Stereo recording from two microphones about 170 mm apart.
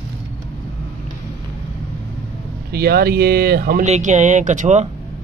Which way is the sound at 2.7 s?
65° right (ahead or behind).